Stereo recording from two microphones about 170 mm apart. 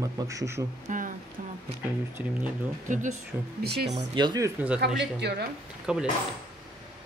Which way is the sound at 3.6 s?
70° right (ahead or behind).